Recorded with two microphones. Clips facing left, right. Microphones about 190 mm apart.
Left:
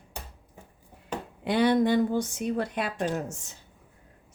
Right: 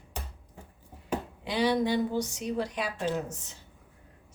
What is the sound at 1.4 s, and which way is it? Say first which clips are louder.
Speech: left 5 dB; 55° left (ahead or behind).